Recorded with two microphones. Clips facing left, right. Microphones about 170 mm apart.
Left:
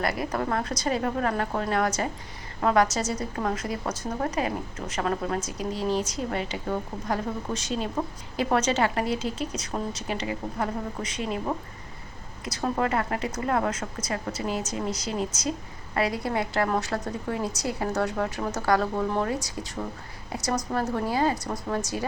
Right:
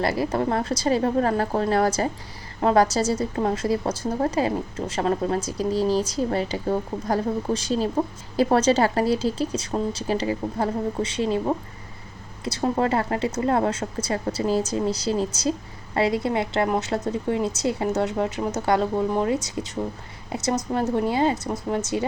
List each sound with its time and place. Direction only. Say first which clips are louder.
0.0 s a woman's voice: right 5 dB; 30° right (ahead or behind)